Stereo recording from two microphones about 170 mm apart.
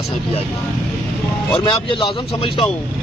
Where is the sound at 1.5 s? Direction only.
30° left (ahead or behind).